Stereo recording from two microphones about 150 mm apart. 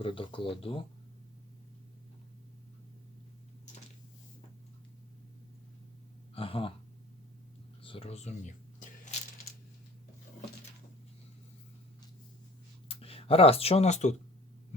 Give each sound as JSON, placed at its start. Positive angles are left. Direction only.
{"t": 0.0, "sound": "speech", "side_deg": 35}
{"t": 6.3, "sound": "speech", "side_deg": 40}
{"t": 7.8, "sound": "a sound", "side_deg": 35}
{"t": 12.9, "sound": "speech", "side_deg": 40}